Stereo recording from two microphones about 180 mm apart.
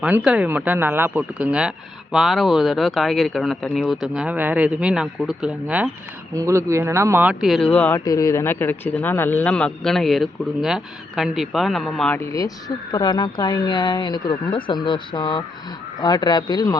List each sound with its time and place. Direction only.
0.0 s speech: 5° right (ahead or behind)
6.3 s speech: 15° right (ahead or behind); by 8.0 s 10° left (ahead or behind)
8.0 s speech: 20° left (ahead or behind)